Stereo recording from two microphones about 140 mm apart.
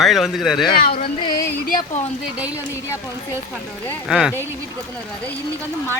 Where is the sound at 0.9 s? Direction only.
40° left (ahead or behind).